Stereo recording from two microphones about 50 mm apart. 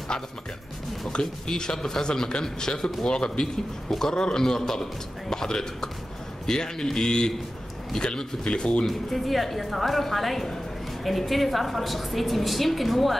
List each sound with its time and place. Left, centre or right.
1.1 s speech: centre
8.8 s a woman's voice: centre